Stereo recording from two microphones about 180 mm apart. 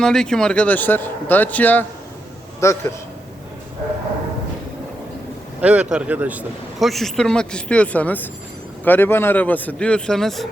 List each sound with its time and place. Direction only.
0.0 s a man's voice: 5° left (ahead or behind)
5.5 s a man's voice: 5° right (ahead or behind)